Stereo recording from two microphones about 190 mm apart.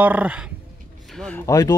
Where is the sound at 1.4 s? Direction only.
15° left (ahead or behind).